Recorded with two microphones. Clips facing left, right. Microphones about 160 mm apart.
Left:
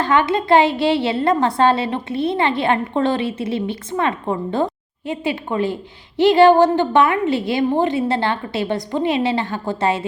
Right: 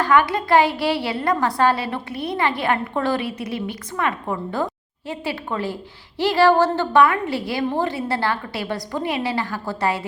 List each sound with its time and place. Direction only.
0.0 s a woman's voice: 25° left (ahead or behind)